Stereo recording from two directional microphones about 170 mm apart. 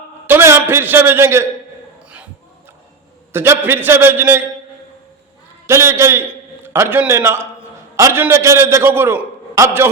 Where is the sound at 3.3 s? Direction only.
15° right (ahead or behind).